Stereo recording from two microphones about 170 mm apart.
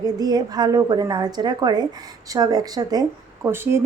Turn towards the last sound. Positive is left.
turn(degrees=-15)  # may be behind; listen again after turning